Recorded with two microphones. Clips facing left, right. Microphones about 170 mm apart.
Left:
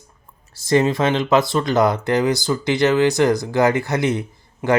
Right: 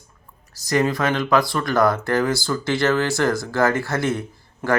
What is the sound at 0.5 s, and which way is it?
Speech, 25° left (ahead or behind).